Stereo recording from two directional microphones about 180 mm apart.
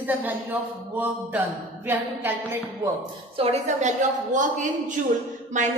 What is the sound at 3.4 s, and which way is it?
A woman's voice, 40° right (ahead or behind).